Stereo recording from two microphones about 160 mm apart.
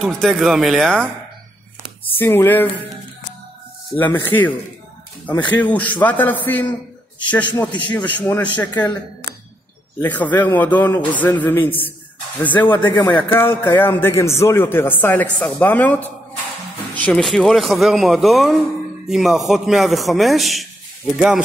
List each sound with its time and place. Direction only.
0.0 s speech: centre (ahead or behind)
2.1 s a man's voice: 15° left (ahead or behind)
3.9 s a man's voice: 15° left (ahead or behind)
10.0 s a man's voice: 10° left (ahead or behind)
12.8 s speech: 30° left (ahead or behind)
13.3 s a man's voice: 15° left (ahead or behind)